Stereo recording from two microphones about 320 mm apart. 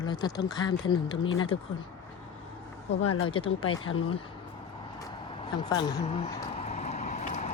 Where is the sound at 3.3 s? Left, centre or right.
Centre.